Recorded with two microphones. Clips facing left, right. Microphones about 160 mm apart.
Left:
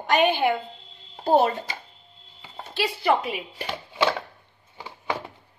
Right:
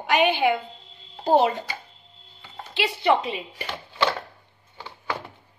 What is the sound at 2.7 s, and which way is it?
Speech, 20° right (ahead or behind).